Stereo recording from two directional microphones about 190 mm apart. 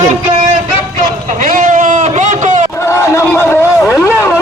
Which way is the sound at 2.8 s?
15° left (ahead or behind).